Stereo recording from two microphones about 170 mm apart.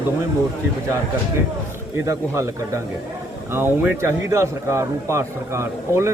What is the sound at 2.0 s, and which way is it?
A man's voice, 15° right (ahead or behind).